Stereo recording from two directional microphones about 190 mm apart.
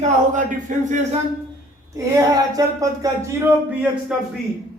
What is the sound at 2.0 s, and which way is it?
Speech, 15° right (ahead or behind).